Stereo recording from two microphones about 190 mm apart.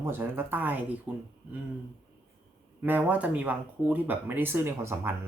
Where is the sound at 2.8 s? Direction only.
10° right (ahead or behind).